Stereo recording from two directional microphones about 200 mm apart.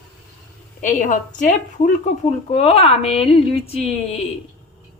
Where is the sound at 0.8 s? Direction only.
40° left (ahead or behind).